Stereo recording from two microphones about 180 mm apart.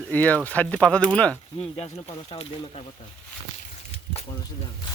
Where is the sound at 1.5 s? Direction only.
30° left (ahead or behind).